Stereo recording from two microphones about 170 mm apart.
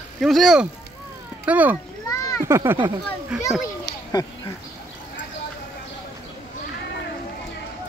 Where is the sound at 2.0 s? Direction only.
20° left (ahead or behind).